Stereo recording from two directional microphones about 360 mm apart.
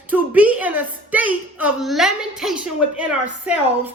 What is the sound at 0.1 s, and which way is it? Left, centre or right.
A woman's voice, centre.